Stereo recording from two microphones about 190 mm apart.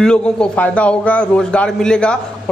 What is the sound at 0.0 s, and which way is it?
A man's voice, 5° left (ahead or behind).